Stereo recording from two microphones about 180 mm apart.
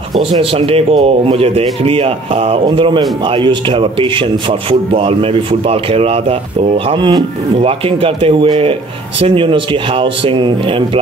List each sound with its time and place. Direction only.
0.3 s a man's voice: 30° right (ahead or behind)